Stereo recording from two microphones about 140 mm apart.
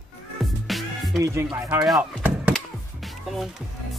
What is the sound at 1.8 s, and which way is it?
Speech, centre (ahead or behind).